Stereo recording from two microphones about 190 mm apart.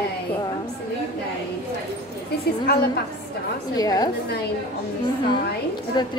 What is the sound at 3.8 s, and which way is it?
Speech, 20° left (ahead or behind).